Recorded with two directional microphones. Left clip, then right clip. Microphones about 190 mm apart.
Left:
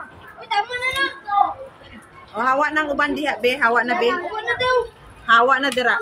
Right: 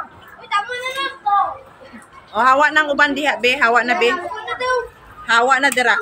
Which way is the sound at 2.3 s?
35° right (ahead or behind).